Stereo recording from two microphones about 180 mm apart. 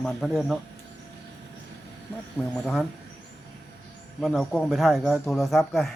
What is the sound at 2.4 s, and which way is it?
Speech, 5° left (ahead or behind).